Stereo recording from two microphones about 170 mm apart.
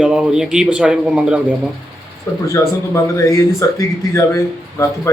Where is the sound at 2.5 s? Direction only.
20° left (ahead or behind).